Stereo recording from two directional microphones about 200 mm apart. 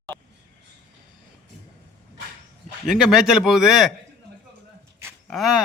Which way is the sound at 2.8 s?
Centre (ahead or behind).